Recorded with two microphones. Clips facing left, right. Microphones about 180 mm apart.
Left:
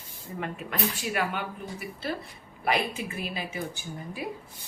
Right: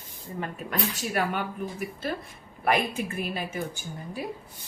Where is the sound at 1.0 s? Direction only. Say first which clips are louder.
Right 2 dB; 45° right (ahead or behind).